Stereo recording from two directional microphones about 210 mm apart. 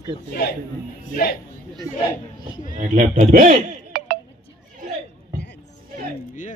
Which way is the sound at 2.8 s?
40° right (ahead or behind).